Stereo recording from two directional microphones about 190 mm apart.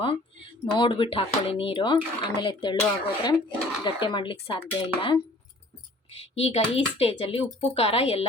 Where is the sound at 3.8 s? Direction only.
25° left (ahead or behind).